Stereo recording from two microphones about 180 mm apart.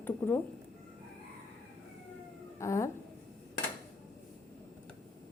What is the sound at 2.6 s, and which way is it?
Speech, 15° left (ahead or behind).